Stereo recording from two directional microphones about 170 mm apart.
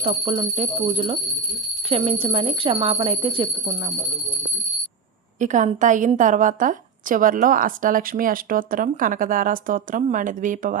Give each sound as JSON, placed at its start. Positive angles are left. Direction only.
{"t": 0.0, "sound": "speech", "side_deg": -30}
{"t": 5.4, "sound": "a woman's voice", "side_deg": -45}